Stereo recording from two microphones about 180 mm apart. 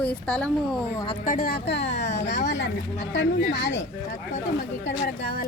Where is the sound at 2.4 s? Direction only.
75° left (ahead or behind).